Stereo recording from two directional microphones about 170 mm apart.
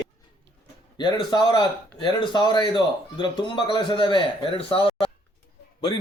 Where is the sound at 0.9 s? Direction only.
25° left (ahead or behind).